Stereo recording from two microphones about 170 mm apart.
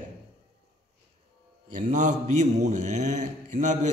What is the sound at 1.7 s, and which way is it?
A man's voice, 45° right (ahead or behind).